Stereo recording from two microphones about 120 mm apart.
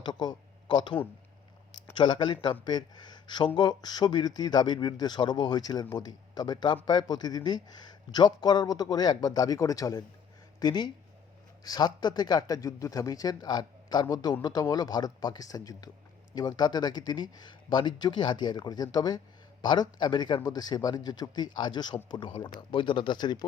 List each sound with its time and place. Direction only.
0.0 s speech: 35° left (ahead or behind)